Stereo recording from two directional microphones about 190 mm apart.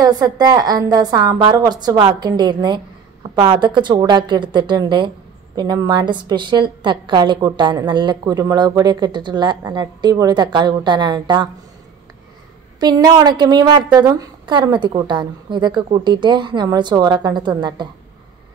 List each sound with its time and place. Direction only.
0.0 s a woman's voice: 20° right (ahead or behind)
12.8 s a woman's voice: 20° right (ahead or behind)